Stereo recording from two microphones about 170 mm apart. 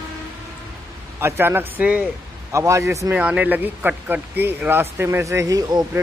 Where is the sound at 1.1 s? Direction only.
15° right (ahead or behind).